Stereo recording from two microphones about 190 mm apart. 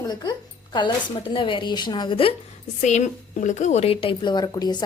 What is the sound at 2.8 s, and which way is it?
A woman's voice, 40° left (ahead or behind).